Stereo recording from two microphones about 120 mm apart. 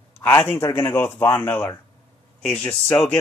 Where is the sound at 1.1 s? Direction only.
20° left (ahead or behind).